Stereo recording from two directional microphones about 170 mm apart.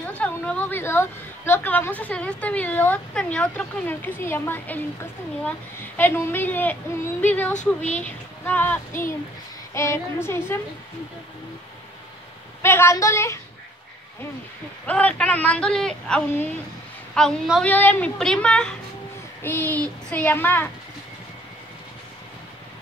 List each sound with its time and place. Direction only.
0.2 s a woman's voice: 10° left (ahead or behind)
5.9 s a woman's voice: 10° left (ahead or behind)
12.6 s a woman's voice: 15° left (ahead or behind)
14.9 s a woman's voice: 10° left (ahead or behind)